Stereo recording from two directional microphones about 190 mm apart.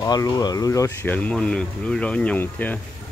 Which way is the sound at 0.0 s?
20° left (ahead or behind).